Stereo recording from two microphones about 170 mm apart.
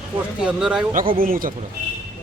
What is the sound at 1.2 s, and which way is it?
Speech, 55° right (ahead or behind).